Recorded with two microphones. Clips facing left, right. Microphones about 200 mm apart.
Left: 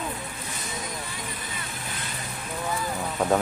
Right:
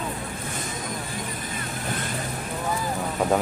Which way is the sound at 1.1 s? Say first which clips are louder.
Right 4 dB; 45° right (ahead or behind).